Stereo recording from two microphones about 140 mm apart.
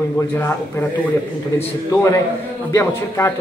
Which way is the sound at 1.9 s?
20° left (ahead or behind).